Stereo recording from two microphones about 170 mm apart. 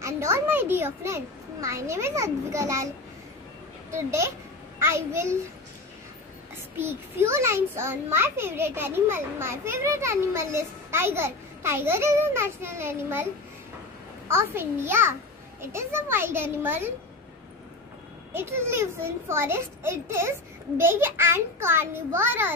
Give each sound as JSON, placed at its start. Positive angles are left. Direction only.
{"t": 0.0, "sound": "a child's voice", "side_deg": -15}
{"t": 4.7, "sound": "a child's voice", "side_deg": -15}
{"t": 6.8, "sound": "a child's voice", "side_deg": -15}
{"t": 18.3, "sound": "a child's voice", "side_deg": -15}